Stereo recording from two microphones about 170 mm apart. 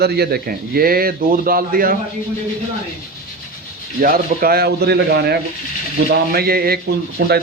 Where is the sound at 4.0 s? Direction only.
60° right (ahead or behind).